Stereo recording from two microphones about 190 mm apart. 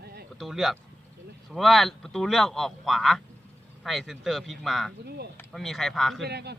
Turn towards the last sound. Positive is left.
turn(degrees=-60)  # may be behind; listen again after turning